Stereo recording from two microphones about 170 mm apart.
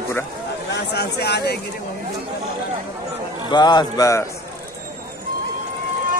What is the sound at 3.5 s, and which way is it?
Speech, 25° left (ahead or behind).